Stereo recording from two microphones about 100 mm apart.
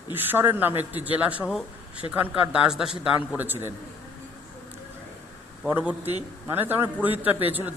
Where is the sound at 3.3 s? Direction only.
20° right (ahead or behind).